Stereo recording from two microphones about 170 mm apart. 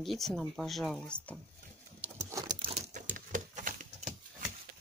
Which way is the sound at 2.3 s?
20° right (ahead or behind).